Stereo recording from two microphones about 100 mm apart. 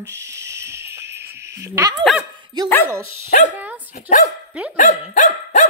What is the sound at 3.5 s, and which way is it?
Dog, 15° right (ahead or behind).